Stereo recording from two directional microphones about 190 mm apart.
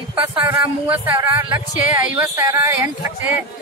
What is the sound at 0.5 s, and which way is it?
Speech, 10° right (ahead or behind).